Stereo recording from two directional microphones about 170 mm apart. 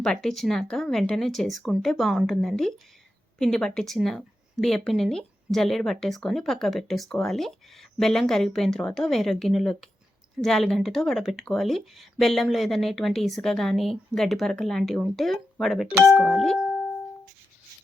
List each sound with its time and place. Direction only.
0.0 s speech: 5° left (ahead or behind)